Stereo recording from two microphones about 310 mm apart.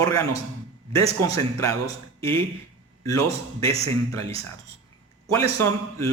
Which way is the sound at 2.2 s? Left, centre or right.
Centre.